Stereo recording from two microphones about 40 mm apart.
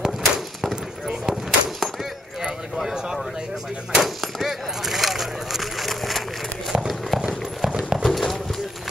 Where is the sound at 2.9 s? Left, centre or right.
Centre.